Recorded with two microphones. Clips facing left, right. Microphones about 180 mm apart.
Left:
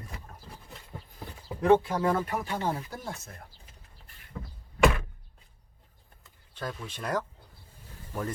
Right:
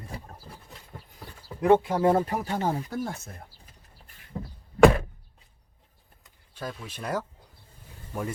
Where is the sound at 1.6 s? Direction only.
15° right (ahead or behind); by 2.5 s 30° right (ahead or behind).